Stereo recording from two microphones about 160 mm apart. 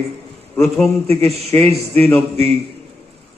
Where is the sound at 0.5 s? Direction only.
5° left (ahead or behind).